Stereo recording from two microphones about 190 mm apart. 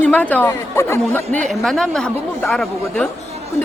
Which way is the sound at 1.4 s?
Centre (ahead or behind).